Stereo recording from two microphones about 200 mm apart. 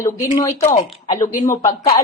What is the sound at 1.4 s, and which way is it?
Speech, 15° left (ahead or behind).